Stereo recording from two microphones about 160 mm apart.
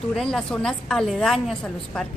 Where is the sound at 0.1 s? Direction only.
5° left (ahead or behind).